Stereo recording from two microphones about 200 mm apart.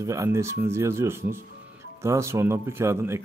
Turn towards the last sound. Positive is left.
turn(degrees=-15)  # may be behind; listen again after turning